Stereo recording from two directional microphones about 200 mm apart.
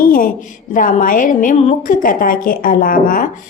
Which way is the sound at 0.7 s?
40° left (ahead or behind).